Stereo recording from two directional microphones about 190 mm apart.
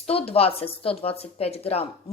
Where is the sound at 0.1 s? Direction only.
30° left (ahead or behind).